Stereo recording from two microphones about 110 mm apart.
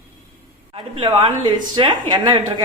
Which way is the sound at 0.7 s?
55° right (ahead or behind).